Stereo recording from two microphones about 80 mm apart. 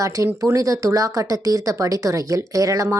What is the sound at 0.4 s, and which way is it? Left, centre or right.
Speech, right.